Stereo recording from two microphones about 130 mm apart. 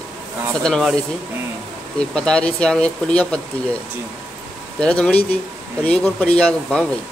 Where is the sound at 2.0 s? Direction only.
5° left (ahead or behind).